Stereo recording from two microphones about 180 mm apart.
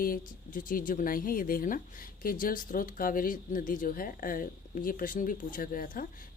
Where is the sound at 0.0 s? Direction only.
50° left (ahead or behind).